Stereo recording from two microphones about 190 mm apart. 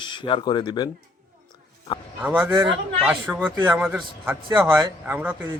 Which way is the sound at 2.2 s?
10° right (ahead or behind).